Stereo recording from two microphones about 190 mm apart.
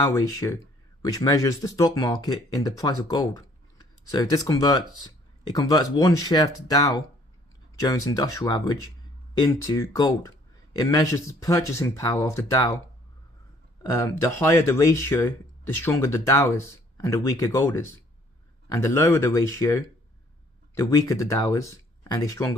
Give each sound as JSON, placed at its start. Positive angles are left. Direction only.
{"t": 0.0, "sound": "speech", "side_deg": 15}
{"t": 13.9, "sound": "speech", "side_deg": 15}